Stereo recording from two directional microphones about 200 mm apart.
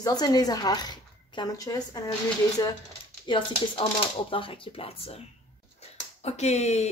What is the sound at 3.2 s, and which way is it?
Speech, 25° left (ahead or behind).